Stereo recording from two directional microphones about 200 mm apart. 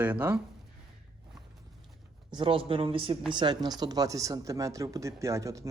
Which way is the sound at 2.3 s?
25° right (ahead or behind).